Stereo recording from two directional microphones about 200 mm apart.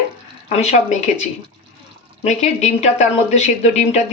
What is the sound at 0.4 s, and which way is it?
Speech, 35° left (ahead or behind).